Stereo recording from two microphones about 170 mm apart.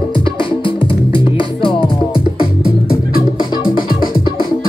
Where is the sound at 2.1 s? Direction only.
25° right (ahead or behind).